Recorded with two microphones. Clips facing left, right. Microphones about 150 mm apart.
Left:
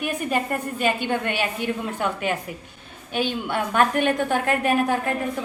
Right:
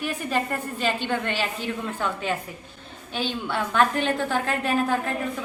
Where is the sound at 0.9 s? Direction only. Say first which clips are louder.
Left 2 dB; 10° left (ahead or behind).